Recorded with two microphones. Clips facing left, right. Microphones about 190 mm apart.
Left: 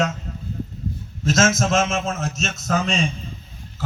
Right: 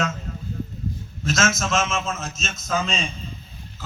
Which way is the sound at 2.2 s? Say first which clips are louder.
Left 6 dB; 65° left (ahead or behind).